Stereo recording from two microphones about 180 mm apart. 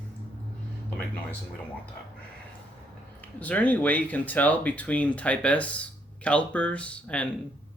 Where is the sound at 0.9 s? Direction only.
10° left (ahead or behind).